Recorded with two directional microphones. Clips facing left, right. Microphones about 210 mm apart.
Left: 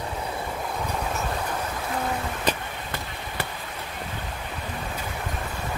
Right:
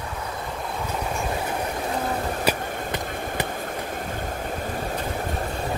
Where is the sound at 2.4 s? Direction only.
20° right (ahead or behind).